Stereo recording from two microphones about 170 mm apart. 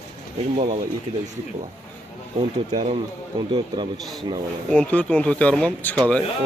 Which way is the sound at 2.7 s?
35° right (ahead or behind).